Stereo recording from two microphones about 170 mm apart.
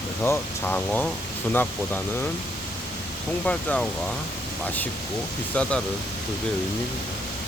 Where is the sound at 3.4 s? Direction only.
5° left (ahead or behind).